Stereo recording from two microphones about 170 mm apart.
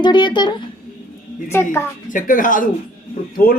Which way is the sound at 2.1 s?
50° left (ahead or behind).